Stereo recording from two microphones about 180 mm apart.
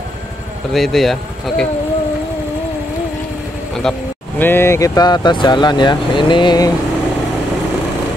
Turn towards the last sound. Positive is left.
turn(degrees=25)  # may be behind; listen again after turning